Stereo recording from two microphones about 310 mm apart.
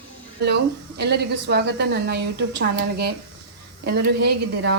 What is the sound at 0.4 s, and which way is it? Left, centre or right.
A woman's voice, right.